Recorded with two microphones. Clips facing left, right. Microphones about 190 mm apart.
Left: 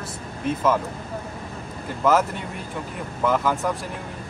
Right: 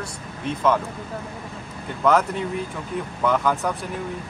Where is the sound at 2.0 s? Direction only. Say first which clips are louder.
Right 1 dB; 5° left (ahead or behind).